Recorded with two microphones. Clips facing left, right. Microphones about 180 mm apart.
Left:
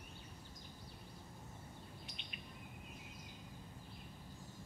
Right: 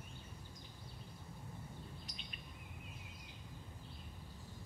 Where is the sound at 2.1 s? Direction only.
40° right (ahead or behind).